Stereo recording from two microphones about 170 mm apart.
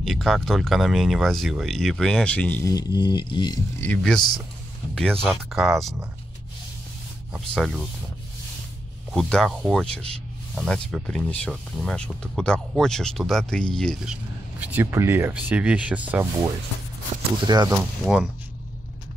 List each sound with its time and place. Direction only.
0.0 s speech: centre (ahead or behind)
2.7 s music: 25° left (ahead or behind)
3.8 s speech: 5° left (ahead or behind)
5.2 s speech: centre (ahead or behind)
7.3 s speech: centre (ahead or behind)
9.1 s speech: 5° left (ahead or behind)
14.6 s rub: 10° right (ahead or behind)
17.1 s a sound: 50° right (ahead or behind)
17.5 s speech: 25° right (ahead or behind)
18.0 s speech: centre (ahead or behind)